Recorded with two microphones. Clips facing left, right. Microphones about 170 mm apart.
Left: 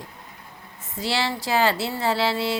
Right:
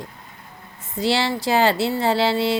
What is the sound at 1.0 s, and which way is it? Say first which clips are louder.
A woman's voice: right 5 dB; 25° right (ahead or behind).